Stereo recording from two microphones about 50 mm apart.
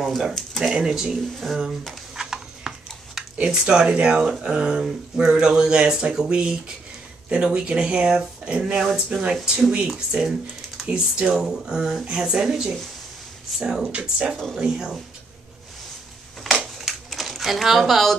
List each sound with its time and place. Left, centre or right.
0.0 s speech: centre
2.2 s horse: centre
3.4 s speech: centre
8.7 s speech: centre
10.9 s speech: right
11.3 s speech: centre
16.6 s a sound: centre